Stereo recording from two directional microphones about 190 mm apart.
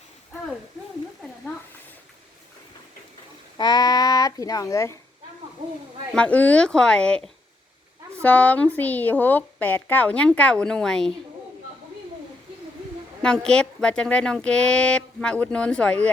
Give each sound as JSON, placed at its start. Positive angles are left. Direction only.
{"t": 3.6, "sound": "speech", "side_deg": 20}
{"t": 6.1, "sound": "speech", "side_deg": 5}
{"t": 8.2, "sound": "a woman's voice", "side_deg": 10}
{"t": 13.2, "sound": "speech", "side_deg": 5}